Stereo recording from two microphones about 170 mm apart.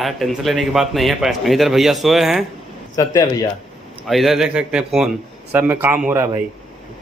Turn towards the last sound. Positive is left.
turn(degrees=-15)  # may be behind; listen again after turning